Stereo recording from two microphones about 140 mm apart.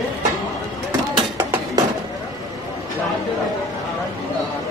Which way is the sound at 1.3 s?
20° right (ahead or behind).